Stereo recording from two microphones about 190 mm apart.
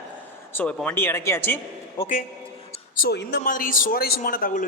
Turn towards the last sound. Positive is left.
turn(degrees=45)  # may be behind; listen again after turning